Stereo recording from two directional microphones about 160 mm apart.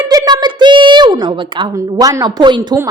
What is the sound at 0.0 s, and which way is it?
A woman's voice, 25° right (ahead or behind).